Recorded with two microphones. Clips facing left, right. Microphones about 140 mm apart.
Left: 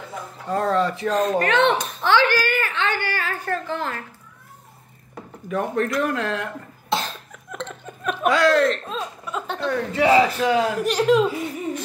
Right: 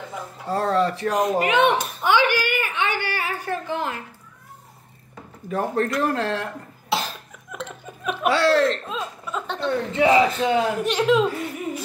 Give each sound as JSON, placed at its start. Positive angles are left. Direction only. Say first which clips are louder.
{"t": 0.5, "sound": "speech", "louder": "even", "side_deg": -30}
{"t": 1.1, "sound": "a woman's voice", "louder": "left 1 dB", "side_deg": -15}
{"t": 5.5, "sound": "speech", "louder": "even", "side_deg": -35}
{"t": 6.9, "sound": "cough", "louder": "even", "side_deg": -5}
{"t": 8.3, "sound": "speech", "louder": "left 1 dB", "side_deg": -30}
{"t": 8.8, "sound": "chuckle", "louder": "even", "side_deg": 0}
{"t": 9.7, "sound": "a man's voice", "louder": "even", "side_deg": -25}
{"t": 10.8, "sound": "speech", "louder": "left 1 dB", "side_deg": 0}